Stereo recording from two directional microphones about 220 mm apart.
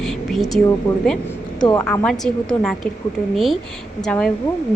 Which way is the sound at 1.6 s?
20° left (ahead or behind).